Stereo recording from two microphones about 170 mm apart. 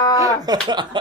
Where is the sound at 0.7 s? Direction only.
25° right (ahead or behind).